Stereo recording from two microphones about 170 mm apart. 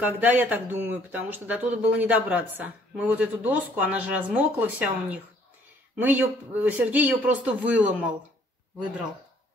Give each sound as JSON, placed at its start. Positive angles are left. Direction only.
{"t": 0.0, "sound": "speech", "side_deg": -10}